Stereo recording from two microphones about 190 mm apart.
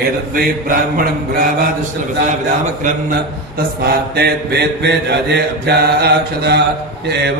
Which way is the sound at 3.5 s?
55° right (ahead or behind).